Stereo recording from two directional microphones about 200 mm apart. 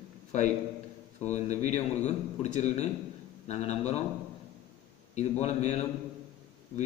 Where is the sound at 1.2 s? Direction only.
35° left (ahead or behind).